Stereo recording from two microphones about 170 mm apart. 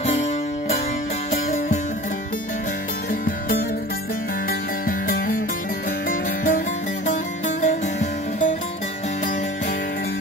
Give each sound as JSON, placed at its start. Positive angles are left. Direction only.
{"t": 0.0, "sound": "music", "side_deg": 40}
{"t": 3.1, "sound": "music", "side_deg": 55}